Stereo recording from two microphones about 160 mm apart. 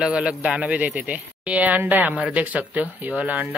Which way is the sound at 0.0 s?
5° right (ahead or behind).